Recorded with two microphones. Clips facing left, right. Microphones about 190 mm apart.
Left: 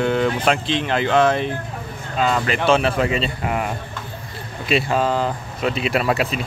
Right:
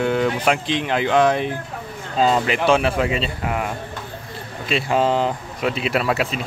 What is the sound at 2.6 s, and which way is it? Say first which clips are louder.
Speech: even; 10° right (ahead or behind).